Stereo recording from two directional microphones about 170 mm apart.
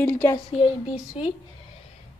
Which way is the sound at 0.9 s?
45° left (ahead or behind).